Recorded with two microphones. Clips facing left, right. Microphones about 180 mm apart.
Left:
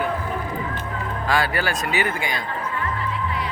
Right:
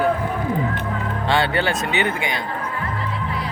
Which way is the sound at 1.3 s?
25° right (ahead or behind).